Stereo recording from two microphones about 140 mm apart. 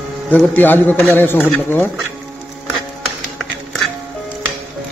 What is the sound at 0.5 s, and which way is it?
Speech, 15° left (ahead or behind).